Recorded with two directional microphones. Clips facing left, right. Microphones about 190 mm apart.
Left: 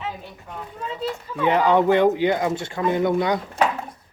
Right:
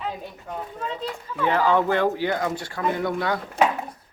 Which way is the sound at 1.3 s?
20° left (ahead or behind).